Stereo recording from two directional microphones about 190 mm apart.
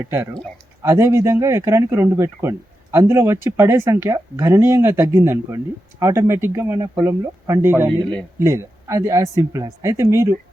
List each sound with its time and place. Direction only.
0.8 s speech: 15° right (ahead or behind)